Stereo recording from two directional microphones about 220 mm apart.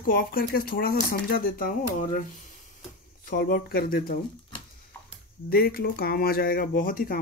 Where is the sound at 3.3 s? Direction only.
40° left (ahead or behind).